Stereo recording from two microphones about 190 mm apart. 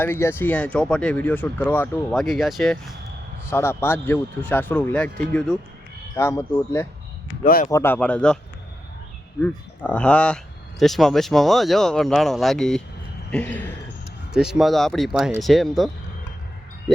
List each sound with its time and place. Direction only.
0.0 s speech: 10° left (ahead or behind)
3.5 s speech: 15° left (ahead or behind)
7.4 s speech: 50° left (ahead or behind)
7.7 s speech: 15° left (ahead or behind)
9.4 s speech: 5° left (ahead or behind)
14.3 s speech: centre (ahead or behind)